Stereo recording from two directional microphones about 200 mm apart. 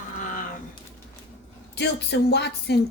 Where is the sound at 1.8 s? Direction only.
55° left (ahead or behind).